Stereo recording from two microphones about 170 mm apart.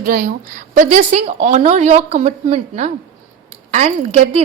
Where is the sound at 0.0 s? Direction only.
55° right (ahead or behind).